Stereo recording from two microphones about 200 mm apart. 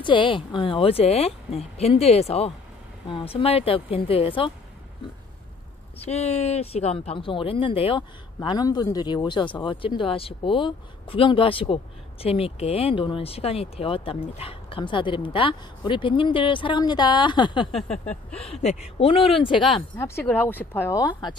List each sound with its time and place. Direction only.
0.0 s speech: 25° left (ahead or behind)
6.0 s speech: 30° left (ahead or behind)
17.8 s a sound: 5° left (ahead or behind)
18.3 s speech: 30° left (ahead or behind)
20.0 s speech: 10° left (ahead or behind)